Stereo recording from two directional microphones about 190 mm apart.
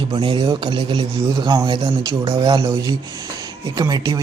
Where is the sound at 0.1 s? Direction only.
25° right (ahead or behind).